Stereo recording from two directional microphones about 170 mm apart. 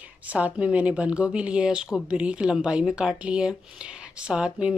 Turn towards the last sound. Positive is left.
turn(degrees=-5)  # may be behind; listen again after turning